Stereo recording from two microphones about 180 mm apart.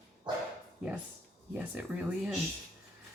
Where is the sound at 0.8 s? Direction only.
5° right (ahead or behind).